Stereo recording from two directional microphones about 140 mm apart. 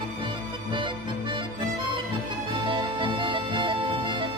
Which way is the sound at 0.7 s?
35° right (ahead or behind).